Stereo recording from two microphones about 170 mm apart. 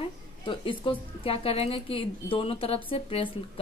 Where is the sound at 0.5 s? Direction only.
30° left (ahead or behind).